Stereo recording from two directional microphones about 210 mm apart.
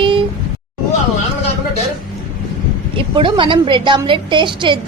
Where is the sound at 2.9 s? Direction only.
25° right (ahead or behind).